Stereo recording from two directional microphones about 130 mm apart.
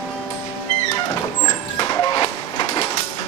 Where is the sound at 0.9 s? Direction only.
30° left (ahead or behind).